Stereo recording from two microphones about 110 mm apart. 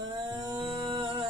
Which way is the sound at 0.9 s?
50° right (ahead or behind).